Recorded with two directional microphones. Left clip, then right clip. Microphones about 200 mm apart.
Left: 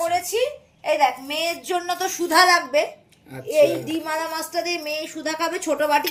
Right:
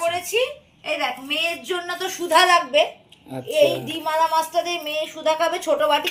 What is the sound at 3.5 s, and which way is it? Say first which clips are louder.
A woman's voice: left 1 dB; 50° left (ahead or behind).